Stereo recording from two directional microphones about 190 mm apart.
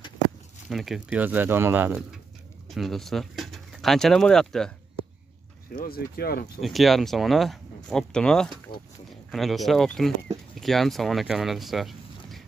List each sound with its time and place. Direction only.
0.7 s speech: centre (ahead or behind)
2.7 s speech: centre (ahead or behind)
5.8 s speech: 50° left (ahead or behind)
6.6 s speech: centre (ahead or behind)